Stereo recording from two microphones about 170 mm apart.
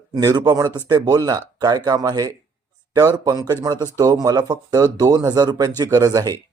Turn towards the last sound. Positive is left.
turn(degrees=-20)  # may be behind; listen again after turning